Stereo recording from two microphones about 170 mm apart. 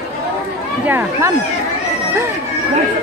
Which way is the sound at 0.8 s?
15° right (ahead or behind).